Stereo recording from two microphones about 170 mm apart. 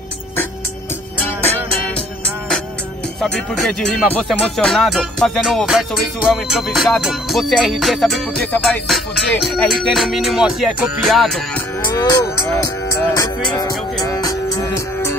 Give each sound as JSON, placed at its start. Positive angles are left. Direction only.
{"t": 3.2, "sound": "speech", "side_deg": 5}
{"t": 11.9, "sound": "cattle", "side_deg": 20}
{"t": 13.1, "sound": "music", "side_deg": 20}